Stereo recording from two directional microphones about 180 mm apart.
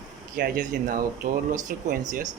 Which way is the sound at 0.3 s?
50° right (ahead or behind).